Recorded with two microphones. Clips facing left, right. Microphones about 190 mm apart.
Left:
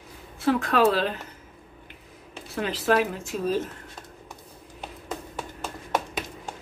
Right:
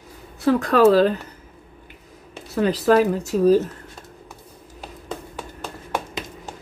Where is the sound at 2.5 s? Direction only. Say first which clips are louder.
Right 7 dB; 40° right (ahead or behind).